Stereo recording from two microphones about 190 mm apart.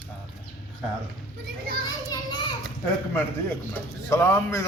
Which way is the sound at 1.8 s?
20° left (ahead or behind).